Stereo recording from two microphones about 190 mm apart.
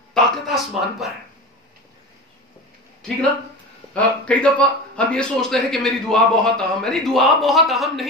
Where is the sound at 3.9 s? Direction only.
5° left (ahead or behind).